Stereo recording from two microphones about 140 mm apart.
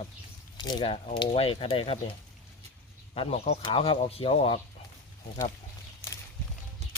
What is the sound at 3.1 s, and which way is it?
Speech, 45° left (ahead or behind).